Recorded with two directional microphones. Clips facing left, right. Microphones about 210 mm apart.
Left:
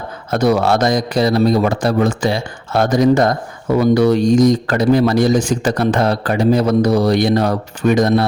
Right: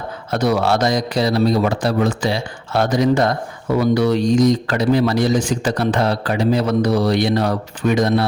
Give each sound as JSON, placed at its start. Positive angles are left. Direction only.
{"t": 0.3, "sound": "a man's voice", "side_deg": 45}